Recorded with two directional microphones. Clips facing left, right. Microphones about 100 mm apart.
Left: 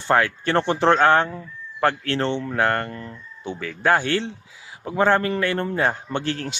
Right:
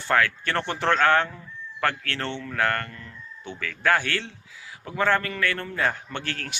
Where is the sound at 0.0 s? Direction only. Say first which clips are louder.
Left 3 dB; 25° left (ahead or behind).